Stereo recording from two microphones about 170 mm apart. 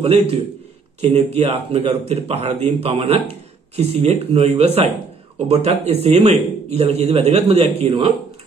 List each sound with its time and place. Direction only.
0.0 s a man's voice: 35° right (ahead or behind)